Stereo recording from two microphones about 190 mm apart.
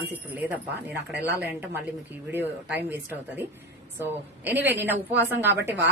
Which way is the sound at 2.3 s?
10° right (ahead or behind).